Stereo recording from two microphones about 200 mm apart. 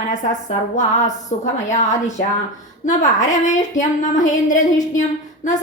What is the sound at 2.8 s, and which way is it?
A woman's voice, 40° left (ahead or behind).